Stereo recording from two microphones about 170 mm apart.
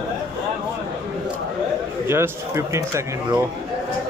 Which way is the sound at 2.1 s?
15° right (ahead or behind).